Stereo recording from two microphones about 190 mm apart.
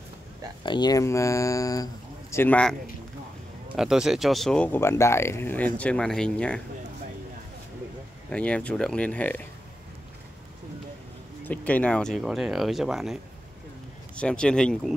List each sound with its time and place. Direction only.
0.7 s speech: 20° left (ahead or behind)
3.7 s speech: 5° right (ahead or behind)
8.3 s speech: 5° left (ahead or behind)
11.4 s speech: 10° left (ahead or behind)